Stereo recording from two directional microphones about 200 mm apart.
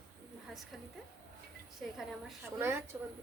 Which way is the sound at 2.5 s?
10° right (ahead or behind).